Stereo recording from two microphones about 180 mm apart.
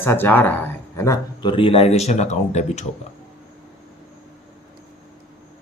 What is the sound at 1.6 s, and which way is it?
Speech, 30° left (ahead or behind).